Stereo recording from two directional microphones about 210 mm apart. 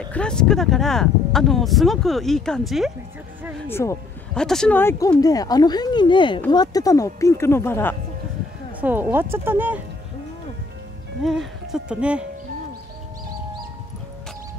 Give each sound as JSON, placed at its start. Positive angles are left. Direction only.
{"t": 0.0, "sound": "speech", "side_deg": 5}
{"t": 3.6, "sound": "speech", "side_deg": 10}
{"t": 8.8, "sound": "speech", "side_deg": -10}
{"t": 11.2, "sound": "speech", "side_deg": 0}